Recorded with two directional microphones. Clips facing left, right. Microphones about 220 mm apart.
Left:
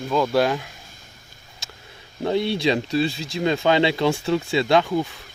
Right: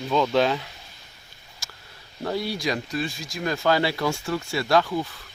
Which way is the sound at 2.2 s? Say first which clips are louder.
Left 6 dB; 25° left (ahead or behind).